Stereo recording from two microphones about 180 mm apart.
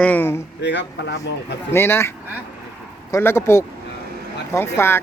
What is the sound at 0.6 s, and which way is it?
Speech, 75° left (ahead or behind).